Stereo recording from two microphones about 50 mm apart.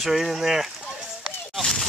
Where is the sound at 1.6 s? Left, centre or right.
Centre.